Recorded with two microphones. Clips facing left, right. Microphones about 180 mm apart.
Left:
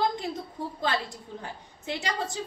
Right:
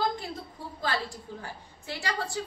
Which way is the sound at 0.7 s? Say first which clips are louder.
Left 1 dB; 20° left (ahead or behind).